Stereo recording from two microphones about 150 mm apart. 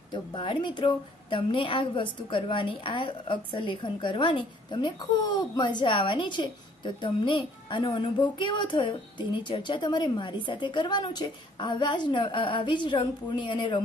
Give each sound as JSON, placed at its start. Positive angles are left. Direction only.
{"t": 0.1, "sound": "a woman's voice", "side_deg": 35}